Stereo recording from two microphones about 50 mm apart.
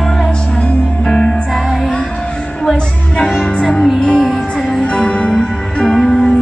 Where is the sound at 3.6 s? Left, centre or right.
Centre.